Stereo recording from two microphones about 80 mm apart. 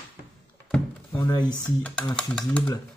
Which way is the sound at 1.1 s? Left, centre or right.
Left.